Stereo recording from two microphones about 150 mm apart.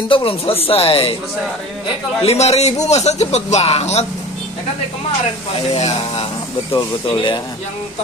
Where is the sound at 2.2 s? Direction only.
45° left (ahead or behind).